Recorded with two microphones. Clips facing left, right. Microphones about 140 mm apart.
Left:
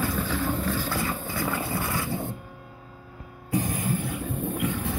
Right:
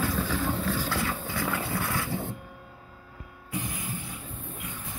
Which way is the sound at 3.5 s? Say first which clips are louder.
Left 8 dB; 40° left (ahead or behind).